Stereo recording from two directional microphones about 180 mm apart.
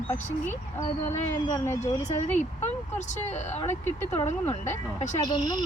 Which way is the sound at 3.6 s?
10° left (ahead or behind).